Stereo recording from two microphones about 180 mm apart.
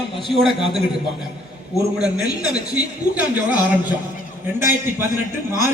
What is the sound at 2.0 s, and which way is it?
A man's voice, 5° right (ahead or behind).